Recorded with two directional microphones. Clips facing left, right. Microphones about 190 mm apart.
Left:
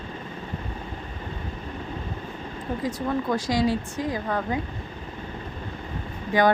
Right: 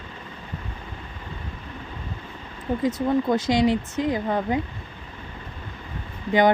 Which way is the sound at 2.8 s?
20° right (ahead or behind).